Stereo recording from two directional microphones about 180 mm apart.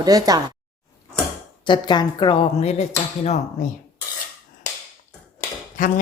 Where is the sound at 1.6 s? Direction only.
25° left (ahead or behind).